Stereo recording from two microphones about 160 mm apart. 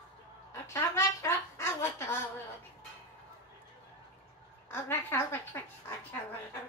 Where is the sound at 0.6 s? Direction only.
20° left (ahead or behind).